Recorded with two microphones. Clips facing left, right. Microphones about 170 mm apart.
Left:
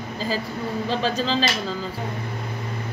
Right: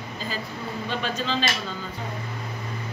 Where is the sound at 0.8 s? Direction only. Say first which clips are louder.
Left 4 dB; 35° left (ahead or behind).